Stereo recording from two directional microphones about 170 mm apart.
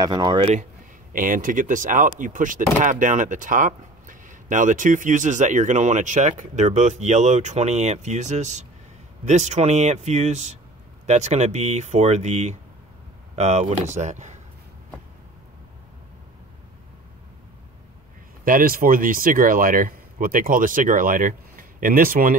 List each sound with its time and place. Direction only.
0.0 s speech: 25° right (ahead or behind)
1.1 s speech: 55° right (ahead or behind)
18.4 s speech: 55° right (ahead or behind)